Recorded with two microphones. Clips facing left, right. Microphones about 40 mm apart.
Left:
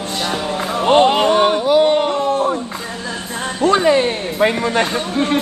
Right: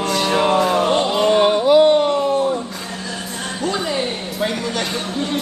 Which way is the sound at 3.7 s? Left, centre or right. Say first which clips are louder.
Left 10 dB; left.